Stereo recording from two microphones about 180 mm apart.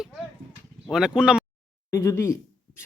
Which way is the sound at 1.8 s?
15° left (ahead or behind).